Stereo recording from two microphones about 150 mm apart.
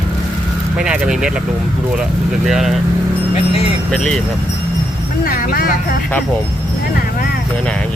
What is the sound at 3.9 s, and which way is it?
Speech, 5° left (ahead or behind).